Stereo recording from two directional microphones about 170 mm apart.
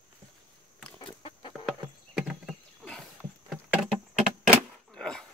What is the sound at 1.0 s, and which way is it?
Chicken, 30° left (ahead or behind).